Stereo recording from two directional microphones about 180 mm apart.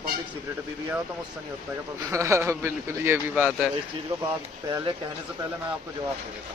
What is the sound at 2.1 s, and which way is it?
A man's voice, 15° right (ahead or behind).